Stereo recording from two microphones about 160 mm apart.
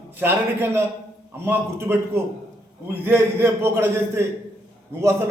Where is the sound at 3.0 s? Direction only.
15° right (ahead or behind).